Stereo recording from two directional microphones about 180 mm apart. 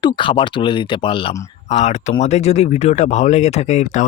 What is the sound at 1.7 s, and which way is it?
Speech, 40° left (ahead or behind).